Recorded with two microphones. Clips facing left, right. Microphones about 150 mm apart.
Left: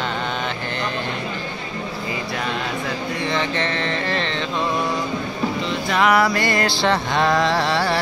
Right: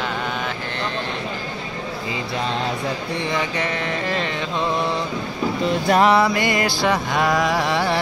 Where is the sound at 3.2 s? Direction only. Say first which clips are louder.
Left 1 dB; 10° right (ahead or behind).